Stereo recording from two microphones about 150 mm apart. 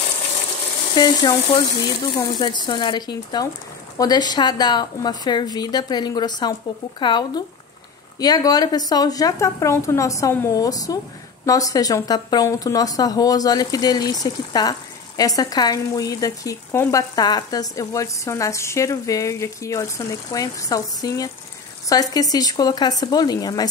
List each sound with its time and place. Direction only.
0.9 s speech: 30° left (ahead or behind)